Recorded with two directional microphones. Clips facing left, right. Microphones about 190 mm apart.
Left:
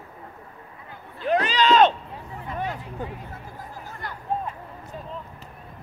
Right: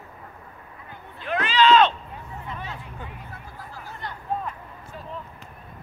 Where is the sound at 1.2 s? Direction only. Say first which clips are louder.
Even; 40° left (ahead or behind).